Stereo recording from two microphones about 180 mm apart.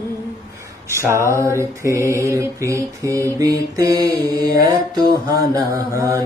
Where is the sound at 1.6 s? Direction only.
15° right (ahead or behind).